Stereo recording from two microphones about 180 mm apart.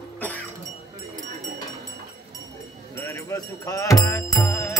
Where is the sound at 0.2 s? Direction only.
10° left (ahead or behind).